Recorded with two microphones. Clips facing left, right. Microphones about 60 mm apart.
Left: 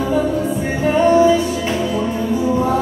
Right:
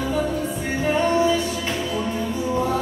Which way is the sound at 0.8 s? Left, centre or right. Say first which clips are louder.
Left 7 dB; centre.